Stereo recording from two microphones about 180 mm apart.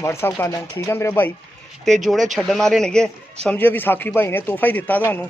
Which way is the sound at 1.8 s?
Centre (ahead or behind).